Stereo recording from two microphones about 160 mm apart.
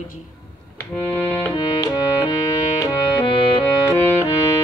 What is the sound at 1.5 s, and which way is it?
Music, 25° left (ahead or behind).